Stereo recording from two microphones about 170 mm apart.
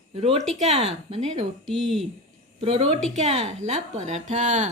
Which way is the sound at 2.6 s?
30° right (ahead or behind).